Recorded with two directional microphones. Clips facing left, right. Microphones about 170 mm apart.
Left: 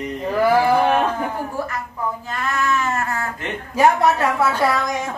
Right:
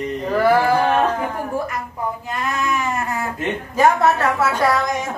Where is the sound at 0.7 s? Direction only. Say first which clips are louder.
Left 1 dB; 15° left (ahead or behind).